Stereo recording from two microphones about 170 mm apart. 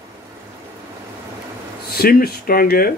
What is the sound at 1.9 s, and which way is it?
A man's voice, 65° left (ahead or behind).